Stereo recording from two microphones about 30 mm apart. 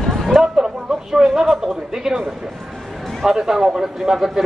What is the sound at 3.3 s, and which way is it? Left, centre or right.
Speech, centre.